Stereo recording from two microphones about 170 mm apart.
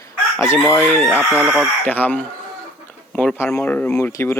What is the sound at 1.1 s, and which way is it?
Chicken, 10° right (ahead or behind).